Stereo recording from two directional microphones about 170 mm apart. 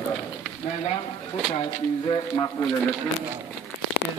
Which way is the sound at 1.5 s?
30° left (ahead or behind).